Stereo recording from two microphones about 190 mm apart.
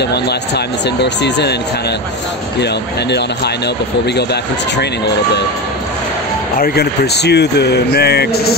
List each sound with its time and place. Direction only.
1.0 s speech: 65° left (ahead or behind)
4.3 s speech: 60° left (ahead or behind)
6.6 s speech: 55° left (ahead or behind)